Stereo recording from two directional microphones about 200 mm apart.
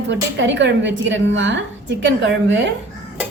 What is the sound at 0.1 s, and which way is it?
A woman's voice, 65° right (ahead or behind).